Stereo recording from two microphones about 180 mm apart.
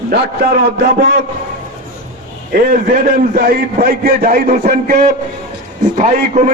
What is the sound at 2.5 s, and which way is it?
A man's voice, 55° right (ahead or behind).